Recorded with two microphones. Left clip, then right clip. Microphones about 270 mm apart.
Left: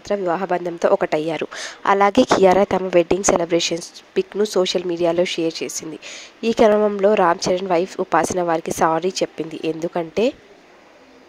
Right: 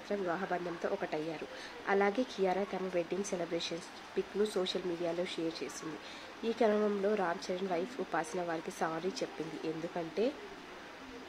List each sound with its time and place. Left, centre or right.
0.1 s a woman's voice: left